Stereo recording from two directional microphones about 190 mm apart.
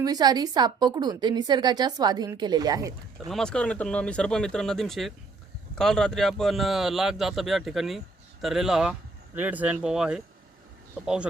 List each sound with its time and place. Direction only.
0.0 s a woman's voice: 20° right (ahead or behind)
3.2 s a man's voice: 5° left (ahead or behind)